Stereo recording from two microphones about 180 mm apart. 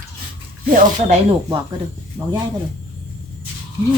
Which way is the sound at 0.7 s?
45° right (ahead or behind).